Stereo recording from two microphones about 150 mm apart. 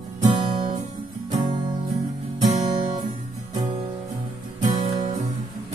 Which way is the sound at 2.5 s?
30° right (ahead or behind).